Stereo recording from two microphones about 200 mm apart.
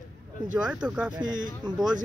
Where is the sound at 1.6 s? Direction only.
20° right (ahead or behind).